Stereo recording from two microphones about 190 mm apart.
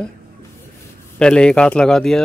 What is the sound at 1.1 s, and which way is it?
A man's voice, 5° left (ahead or behind).